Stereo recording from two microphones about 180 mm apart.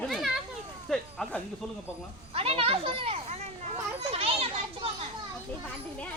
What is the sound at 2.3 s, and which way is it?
Speech, 30° right (ahead or behind).